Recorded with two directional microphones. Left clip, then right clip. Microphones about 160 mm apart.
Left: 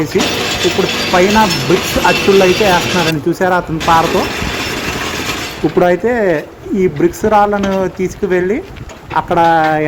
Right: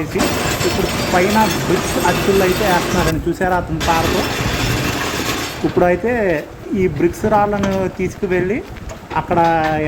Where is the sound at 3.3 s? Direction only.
15° left (ahead or behind).